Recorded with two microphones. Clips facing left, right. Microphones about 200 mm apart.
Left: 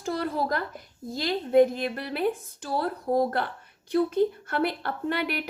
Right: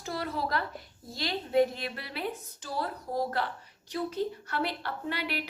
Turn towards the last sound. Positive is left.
turn(degrees=50)  # may be behind; listen again after turning